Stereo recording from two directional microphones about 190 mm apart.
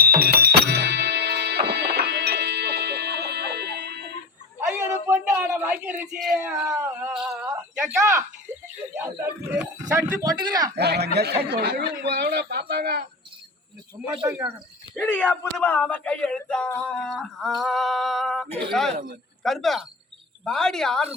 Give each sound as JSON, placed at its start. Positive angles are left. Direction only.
{"t": 0.0, "sound": "music", "side_deg": -50}
{"t": 4.6, "sound": "a sound", "side_deg": -15}
{"t": 7.1, "sound": "a sound", "side_deg": -5}
{"t": 9.0, "sound": "speech", "side_deg": -10}
{"t": 10.8, "sound": "speech", "side_deg": -60}
{"t": 14.0, "sound": "speech", "side_deg": -10}
{"t": 14.9, "sound": "speech", "side_deg": 5}